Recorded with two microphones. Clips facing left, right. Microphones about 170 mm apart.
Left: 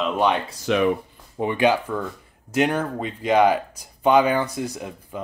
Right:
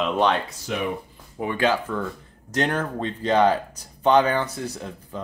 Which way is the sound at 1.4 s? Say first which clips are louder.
Left 3 dB; 15° left (ahead or behind).